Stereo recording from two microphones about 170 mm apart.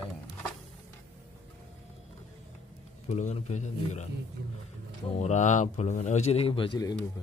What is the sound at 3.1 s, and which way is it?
A man's voice, 40° left (ahead or behind).